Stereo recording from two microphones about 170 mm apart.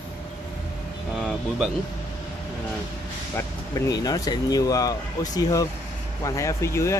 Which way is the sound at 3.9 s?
20° left (ahead or behind).